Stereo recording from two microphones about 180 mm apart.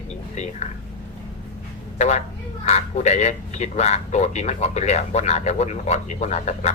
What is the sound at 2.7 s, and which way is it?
Speech, 40° left (ahead or behind).